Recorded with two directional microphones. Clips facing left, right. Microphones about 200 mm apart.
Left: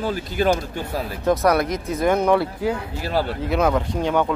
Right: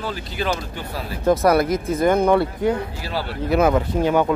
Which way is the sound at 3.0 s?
50° left (ahead or behind).